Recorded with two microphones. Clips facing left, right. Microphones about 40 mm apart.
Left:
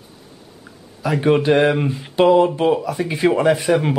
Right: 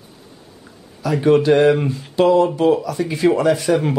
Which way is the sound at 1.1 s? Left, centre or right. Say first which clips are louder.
Right 2 dB; centre.